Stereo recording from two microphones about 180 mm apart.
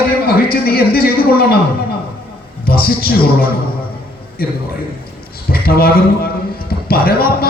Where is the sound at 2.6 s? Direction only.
55° left (ahead or behind).